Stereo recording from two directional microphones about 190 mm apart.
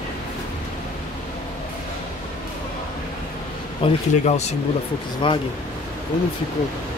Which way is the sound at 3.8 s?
30° left (ahead or behind).